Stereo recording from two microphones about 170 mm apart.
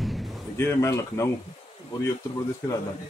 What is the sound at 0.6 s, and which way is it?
Speech, 15° left (ahead or behind).